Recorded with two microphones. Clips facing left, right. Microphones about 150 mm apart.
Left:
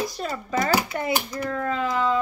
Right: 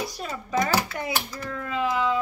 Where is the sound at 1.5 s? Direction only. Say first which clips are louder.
Even; 5° right (ahead or behind).